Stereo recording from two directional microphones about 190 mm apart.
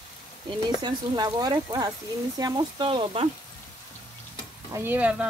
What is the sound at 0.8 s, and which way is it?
Speech, 20° right (ahead or behind).